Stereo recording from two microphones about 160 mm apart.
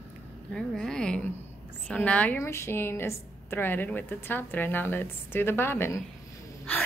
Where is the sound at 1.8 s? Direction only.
10° left (ahead or behind).